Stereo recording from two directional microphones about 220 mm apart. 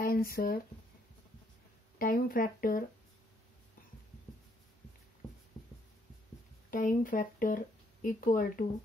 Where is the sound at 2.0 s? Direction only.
40° left (ahead or behind).